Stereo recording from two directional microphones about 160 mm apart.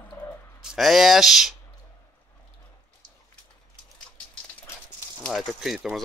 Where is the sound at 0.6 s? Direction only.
Centre (ahead or behind).